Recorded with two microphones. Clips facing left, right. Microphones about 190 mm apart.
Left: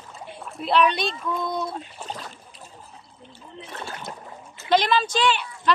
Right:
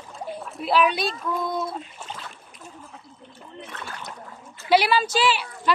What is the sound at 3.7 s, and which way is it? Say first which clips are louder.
Splash: left 4 dB; 25° left (ahead or behind).